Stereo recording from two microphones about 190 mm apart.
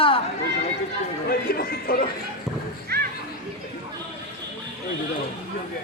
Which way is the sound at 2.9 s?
55° right (ahead or behind).